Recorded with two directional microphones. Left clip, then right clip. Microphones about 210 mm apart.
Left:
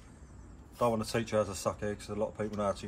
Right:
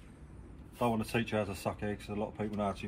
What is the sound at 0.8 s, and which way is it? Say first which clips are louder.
Speech: left 2 dB; 5° left (ahead or behind).